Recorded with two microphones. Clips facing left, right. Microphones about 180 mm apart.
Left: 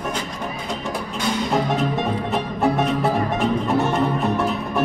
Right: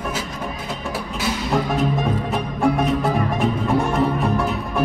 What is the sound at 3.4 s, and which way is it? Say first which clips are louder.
Music: even; centre (ahead or behind).